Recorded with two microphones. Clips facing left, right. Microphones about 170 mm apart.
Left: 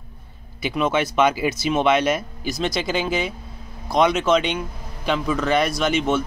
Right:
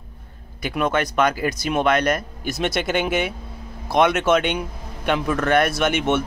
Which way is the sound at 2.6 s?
60° right (ahead or behind).